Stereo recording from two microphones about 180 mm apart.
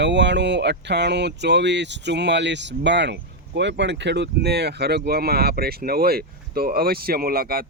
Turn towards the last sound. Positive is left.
turn(degrees=-55)  # may be behind; listen again after turning